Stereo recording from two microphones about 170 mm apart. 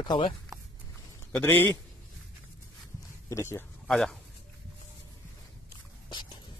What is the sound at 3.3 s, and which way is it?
Speech, 15° left (ahead or behind).